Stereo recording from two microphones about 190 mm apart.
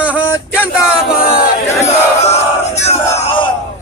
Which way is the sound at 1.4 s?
35° left (ahead or behind).